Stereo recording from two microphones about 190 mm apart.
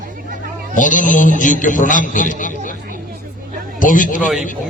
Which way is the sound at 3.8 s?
45° left (ahead or behind).